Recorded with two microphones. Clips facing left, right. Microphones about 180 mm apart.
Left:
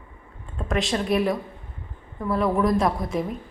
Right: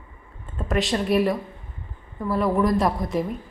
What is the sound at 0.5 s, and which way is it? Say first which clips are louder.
Speech: right 1 dB; centre (ahead or behind).